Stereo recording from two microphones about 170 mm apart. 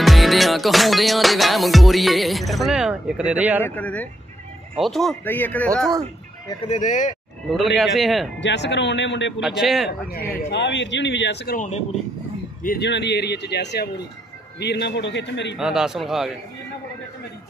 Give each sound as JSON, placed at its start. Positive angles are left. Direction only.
{"t": 0.0, "sound": "music", "side_deg": 0}
{"t": 3.6, "sound": "speech", "side_deg": 10}
{"t": 4.7, "sound": "music", "side_deg": 0}
{"t": 5.2, "sound": "speech", "side_deg": 10}
{"t": 6.7, "sound": "speech", "side_deg": 45}
{"t": 7.4, "sound": "music", "side_deg": 0}
{"t": 8.4, "sound": "speech", "side_deg": 90}
{"t": 9.4, "sound": "music", "side_deg": 0}
{"t": 9.8, "sound": "speech", "side_deg": 65}
{"t": 10.5, "sound": "speech", "side_deg": 90}
{"t": 11.5, "sound": "speech", "side_deg": 45}
{"t": 12.6, "sound": "a man's voice", "side_deg": 75}
{"t": 15.5, "sound": "music", "side_deg": -5}